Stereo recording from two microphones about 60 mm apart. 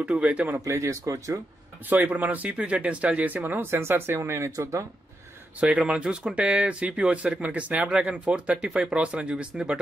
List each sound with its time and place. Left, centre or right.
0.0 s speech: right
0.7 s speech: right
1.9 s speech: right
4.6 s speech: right
5.6 s speech: right